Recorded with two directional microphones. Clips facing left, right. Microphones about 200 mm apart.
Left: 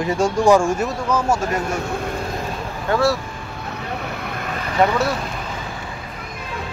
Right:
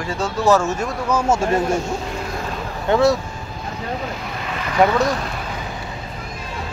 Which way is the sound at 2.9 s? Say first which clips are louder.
Right 3 dB; 20° right (ahead or behind).